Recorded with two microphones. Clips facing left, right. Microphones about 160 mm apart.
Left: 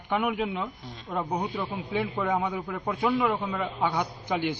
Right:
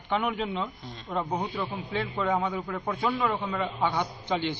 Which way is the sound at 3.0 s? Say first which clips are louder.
Left 3 dB; 5° left (ahead or behind).